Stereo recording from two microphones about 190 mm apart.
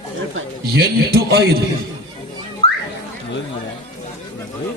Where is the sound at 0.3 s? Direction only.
55° right (ahead or behind).